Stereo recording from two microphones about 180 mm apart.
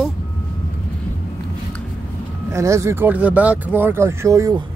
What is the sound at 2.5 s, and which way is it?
Speech, 15° right (ahead or behind).